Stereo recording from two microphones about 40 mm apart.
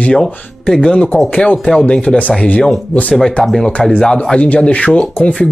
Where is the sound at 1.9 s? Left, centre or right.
Left.